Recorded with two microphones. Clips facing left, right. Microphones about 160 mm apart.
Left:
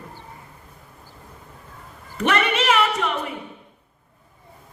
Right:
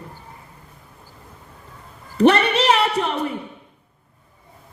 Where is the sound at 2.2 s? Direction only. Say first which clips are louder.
Right 6 dB; 35° right (ahead or behind).